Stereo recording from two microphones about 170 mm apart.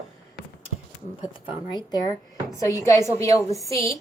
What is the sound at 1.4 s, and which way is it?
A woman's voice, 30° left (ahead or behind).